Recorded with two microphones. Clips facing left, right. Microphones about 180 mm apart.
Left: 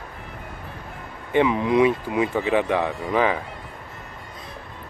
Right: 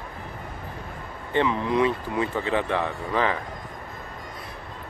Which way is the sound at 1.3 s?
15° left (ahead or behind).